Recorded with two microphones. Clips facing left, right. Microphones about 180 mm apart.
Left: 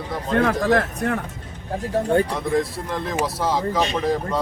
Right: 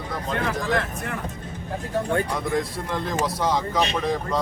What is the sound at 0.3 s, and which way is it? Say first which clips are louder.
Speech: left 7 dB; 50° left (ahead or behind).